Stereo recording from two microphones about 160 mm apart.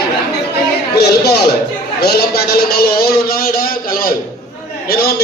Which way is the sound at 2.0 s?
85° left.